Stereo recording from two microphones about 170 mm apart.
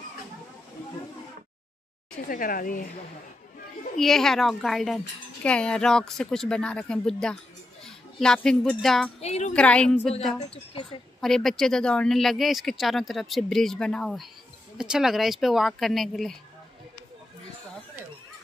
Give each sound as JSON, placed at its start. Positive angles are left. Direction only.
{"t": 2.2, "sound": "speech", "side_deg": 55}
{"t": 4.0, "sound": "speech", "side_deg": 0}
{"t": 9.2, "sound": "a woman's voice", "side_deg": 40}
{"t": 9.5, "sound": "a woman's voice", "side_deg": 5}
{"t": 10.5, "sound": "a woman's voice", "side_deg": 30}
{"t": 11.1, "sound": "speech", "side_deg": 0}